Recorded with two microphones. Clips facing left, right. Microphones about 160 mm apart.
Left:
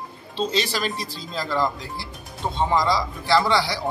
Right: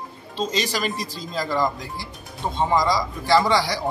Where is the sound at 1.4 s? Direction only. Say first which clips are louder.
Right 1 dB; 15° right (ahead or behind).